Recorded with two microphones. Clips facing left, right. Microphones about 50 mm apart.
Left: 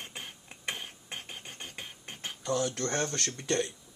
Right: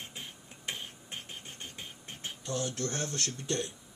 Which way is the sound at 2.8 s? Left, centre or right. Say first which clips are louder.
Left 3 dB; left.